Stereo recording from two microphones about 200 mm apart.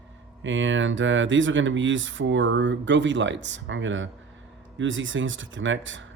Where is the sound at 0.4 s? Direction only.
70° right (ahead or behind).